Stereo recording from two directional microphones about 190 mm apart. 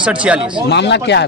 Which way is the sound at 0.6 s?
65° left (ahead or behind).